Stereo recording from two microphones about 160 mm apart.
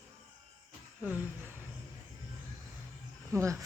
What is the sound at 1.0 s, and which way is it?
Speech, 10° right (ahead or behind).